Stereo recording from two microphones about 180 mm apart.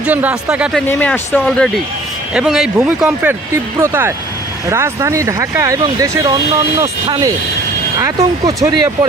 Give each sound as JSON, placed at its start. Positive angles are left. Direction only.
{"t": 0.0, "sound": "speech", "side_deg": -10}
{"t": 0.9, "sound": "speech", "side_deg": 10}